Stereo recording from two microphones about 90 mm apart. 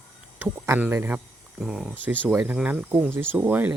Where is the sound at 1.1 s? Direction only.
5° right (ahead or behind).